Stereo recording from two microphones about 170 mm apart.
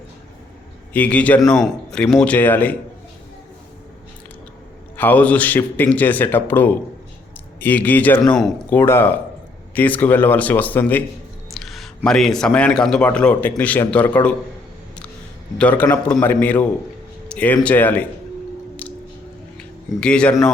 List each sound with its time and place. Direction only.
0.9 s speech: 10° left (ahead or behind)
4.9 s a man's voice: 10° left (ahead or behind)
15.5 s speech: 10° left (ahead or behind)
18.8 s music: 10° left (ahead or behind)
19.5 s speech: 5° left (ahead or behind)